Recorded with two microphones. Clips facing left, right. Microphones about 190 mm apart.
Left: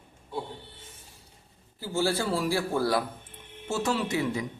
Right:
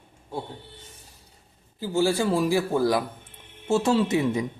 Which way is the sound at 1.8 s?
15° right (ahead or behind).